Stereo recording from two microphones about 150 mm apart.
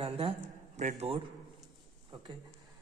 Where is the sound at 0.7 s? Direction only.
45° right (ahead or behind).